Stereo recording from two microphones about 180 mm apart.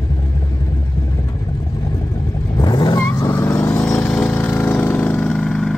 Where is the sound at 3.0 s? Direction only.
15° left (ahead or behind).